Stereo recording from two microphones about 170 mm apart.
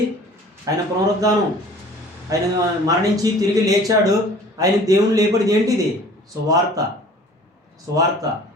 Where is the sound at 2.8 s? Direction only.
20° right (ahead or behind).